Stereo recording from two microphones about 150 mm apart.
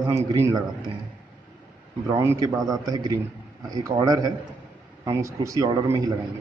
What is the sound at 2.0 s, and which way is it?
Speech, 15° right (ahead or behind).